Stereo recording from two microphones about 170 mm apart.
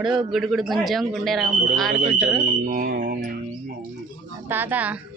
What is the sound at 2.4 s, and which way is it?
Music, 55° right (ahead or behind).